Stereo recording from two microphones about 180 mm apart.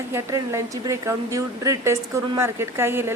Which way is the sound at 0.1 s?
15° right (ahead or behind).